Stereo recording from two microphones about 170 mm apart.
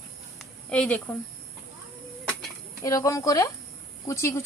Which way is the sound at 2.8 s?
20° left (ahead or behind).